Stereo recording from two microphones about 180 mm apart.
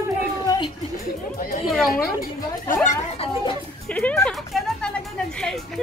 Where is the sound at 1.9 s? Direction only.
50° left (ahead or behind).